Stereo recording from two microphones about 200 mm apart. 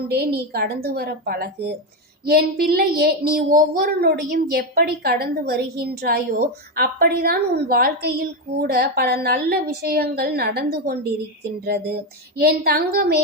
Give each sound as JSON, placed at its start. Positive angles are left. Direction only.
{"t": 0.1, "sound": "a woman's voice", "side_deg": -55}